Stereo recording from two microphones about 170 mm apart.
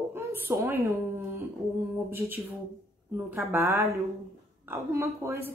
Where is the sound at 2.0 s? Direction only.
15° right (ahead or behind).